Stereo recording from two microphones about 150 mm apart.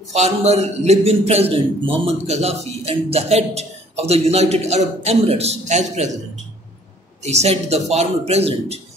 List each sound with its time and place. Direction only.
0.1 s a man's voice: 45° right (ahead or behind)
7.2 s a man's voice: 45° right (ahead or behind)